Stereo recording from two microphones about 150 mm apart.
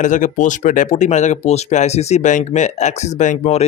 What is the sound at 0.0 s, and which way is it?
Speech, 55° left (ahead or behind).